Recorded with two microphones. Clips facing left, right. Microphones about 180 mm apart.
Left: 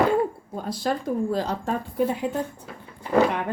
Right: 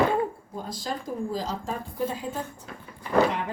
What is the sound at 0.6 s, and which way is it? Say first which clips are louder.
Speech: left 8 dB; 65° left (ahead or behind).